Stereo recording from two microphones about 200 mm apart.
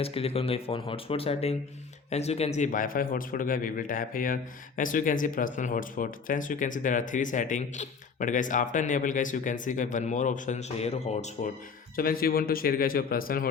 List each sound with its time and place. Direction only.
0.0 s a man's voice: 30° left (ahead or behind)
11.9 s a man's voice: 45° left (ahead or behind)